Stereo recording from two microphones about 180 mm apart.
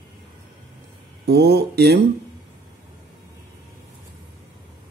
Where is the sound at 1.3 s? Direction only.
60° right (ahead or behind).